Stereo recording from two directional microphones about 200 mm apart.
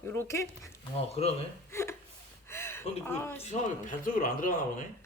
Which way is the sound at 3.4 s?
35° left (ahead or behind).